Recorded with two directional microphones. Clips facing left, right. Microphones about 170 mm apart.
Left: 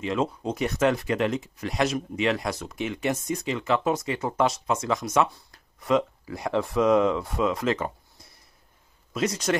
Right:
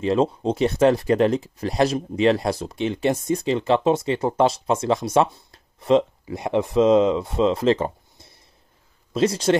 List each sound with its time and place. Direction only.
0.0 s speech: 30° right (ahead or behind)